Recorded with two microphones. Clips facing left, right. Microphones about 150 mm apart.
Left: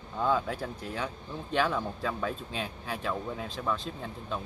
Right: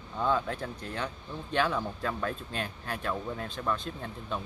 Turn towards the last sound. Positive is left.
turn(degrees=0)  # may be behind; listen again after turning